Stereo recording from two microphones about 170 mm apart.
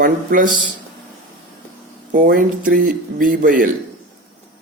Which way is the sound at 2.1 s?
55° right (ahead or behind).